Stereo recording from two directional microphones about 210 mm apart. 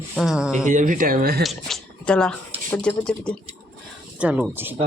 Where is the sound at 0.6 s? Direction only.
40° right (ahead or behind).